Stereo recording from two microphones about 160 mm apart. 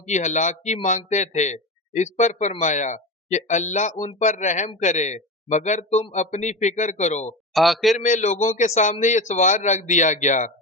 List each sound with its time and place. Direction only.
0.1 s a man's voice: 50° left (ahead or behind)
7.5 s a man's voice: centre (ahead or behind)
7.9 s a man's voice: 50° left (ahead or behind)